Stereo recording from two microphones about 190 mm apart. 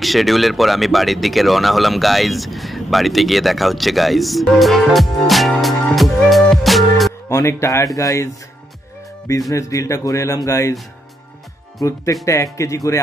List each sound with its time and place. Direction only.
0.0 s speech: centre (ahead or behind)
7.2 s music: 15° left (ahead or behind)
7.6 s speech: 15° left (ahead or behind)
9.5 s speech: 15° left (ahead or behind)
11.8 s speech: 15° left (ahead or behind)